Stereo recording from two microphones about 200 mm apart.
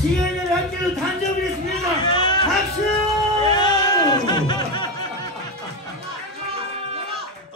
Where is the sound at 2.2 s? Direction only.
20° left (ahead or behind).